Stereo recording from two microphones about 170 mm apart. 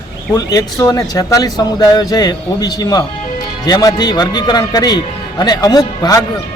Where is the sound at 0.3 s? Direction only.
20° left (ahead or behind).